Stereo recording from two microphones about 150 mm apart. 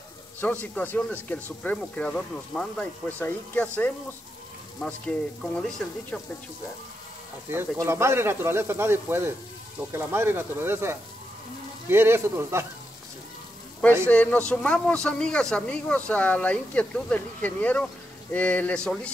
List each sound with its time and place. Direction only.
0.4 s speech: 10° left (ahead or behind)
7.5 s speech: 20° right (ahead or behind)
14.0 s speech: 10° left (ahead or behind)